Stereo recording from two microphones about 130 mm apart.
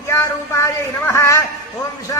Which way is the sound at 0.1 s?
20° left (ahead or behind).